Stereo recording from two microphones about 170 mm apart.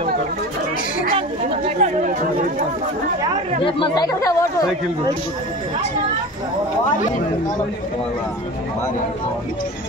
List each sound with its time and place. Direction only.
1.8 s speech: 40° right (ahead or behind)
3.6 s speech: 25° left (ahead or behind)